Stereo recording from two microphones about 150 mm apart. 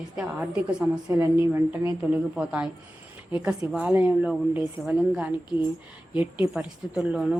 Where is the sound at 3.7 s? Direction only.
10° right (ahead or behind).